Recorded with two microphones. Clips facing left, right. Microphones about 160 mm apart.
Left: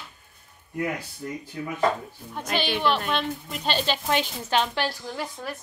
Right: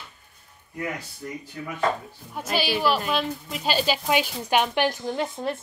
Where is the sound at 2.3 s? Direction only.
5° right (ahead or behind).